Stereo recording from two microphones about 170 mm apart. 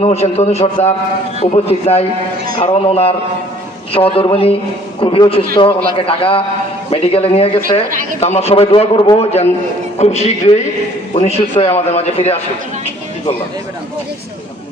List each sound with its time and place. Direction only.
0.0 s a man's voice: 40° left (ahead or behind)